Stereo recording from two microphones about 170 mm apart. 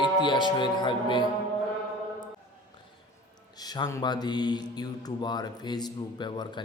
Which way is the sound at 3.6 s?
25° left (ahead or behind).